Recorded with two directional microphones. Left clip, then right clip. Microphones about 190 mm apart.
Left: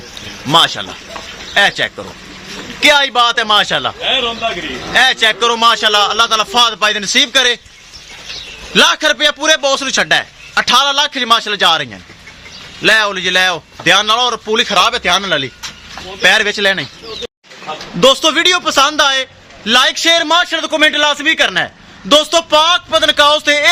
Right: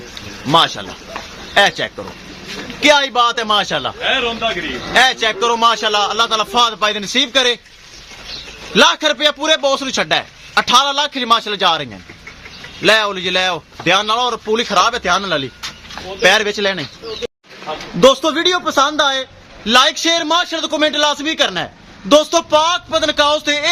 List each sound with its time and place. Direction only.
0.5 s a man's voice: 10° left (ahead or behind)
4.3 s speech: 20° left (ahead or behind)
4.9 s a man's voice: 10° left (ahead or behind)
8.7 s a man's voice: 5° left (ahead or behind)
18.0 s a man's voice: 5° left (ahead or behind)